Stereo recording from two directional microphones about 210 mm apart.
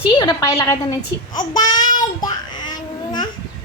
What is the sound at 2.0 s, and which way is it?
Child singing, 20° left (ahead or behind).